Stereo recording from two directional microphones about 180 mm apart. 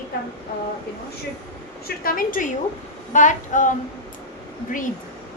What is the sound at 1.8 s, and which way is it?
A woman's voice, 50° left (ahead or behind).